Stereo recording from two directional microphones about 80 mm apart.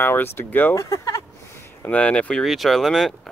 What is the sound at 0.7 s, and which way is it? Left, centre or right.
Speech, left.